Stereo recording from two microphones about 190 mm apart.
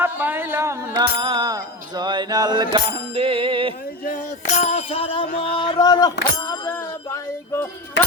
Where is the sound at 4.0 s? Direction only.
45° left (ahead or behind); by 7.7 s 15° left (ahead or behind).